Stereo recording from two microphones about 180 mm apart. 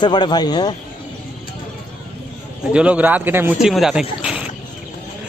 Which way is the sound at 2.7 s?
5° right (ahead or behind).